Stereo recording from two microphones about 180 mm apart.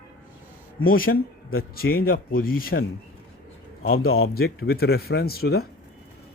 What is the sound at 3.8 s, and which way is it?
A man's voice, 55° left (ahead or behind).